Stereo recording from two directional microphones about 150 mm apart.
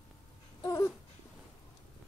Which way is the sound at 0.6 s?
20° left (ahead or behind).